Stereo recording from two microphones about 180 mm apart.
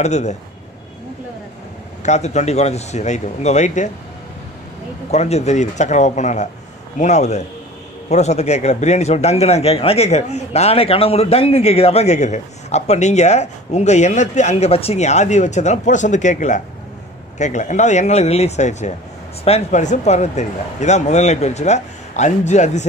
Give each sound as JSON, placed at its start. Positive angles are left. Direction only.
{"t": 0.0, "sound": "speech", "side_deg": 40}
{"t": 2.0, "sound": "speech", "side_deg": 40}
{"t": 5.1, "sound": "speech", "side_deg": 35}